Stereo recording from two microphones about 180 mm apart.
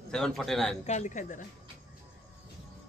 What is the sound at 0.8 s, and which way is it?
Speech, 40° left (ahead or behind).